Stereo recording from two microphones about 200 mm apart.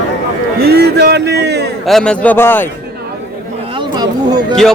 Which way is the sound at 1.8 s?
5° left (ahead or behind).